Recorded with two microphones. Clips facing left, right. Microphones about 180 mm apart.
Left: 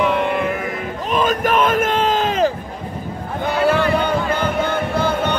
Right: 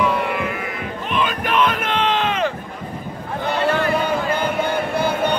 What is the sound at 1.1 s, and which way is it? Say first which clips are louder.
Battle cry: left 4 dB; 45° left (ahead or behind).